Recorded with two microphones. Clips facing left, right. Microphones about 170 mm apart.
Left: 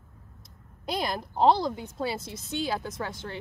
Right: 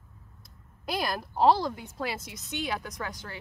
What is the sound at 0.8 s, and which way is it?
A woman's voice, 25° left (ahead or behind).